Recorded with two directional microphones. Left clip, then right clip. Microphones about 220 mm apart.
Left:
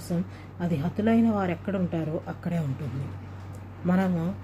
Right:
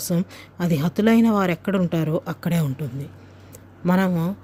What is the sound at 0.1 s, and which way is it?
Speech, 50° right (ahead or behind).